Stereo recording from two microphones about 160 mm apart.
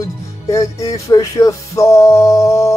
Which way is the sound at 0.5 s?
20° left (ahead or behind).